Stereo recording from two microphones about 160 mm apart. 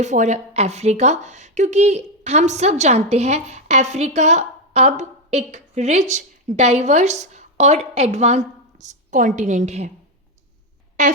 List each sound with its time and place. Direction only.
0.0 s a woman's voice: 45° right (ahead or behind)